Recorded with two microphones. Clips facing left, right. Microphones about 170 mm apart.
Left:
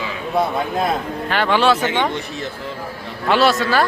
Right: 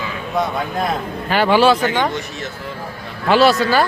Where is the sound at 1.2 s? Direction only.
5° right (ahead or behind).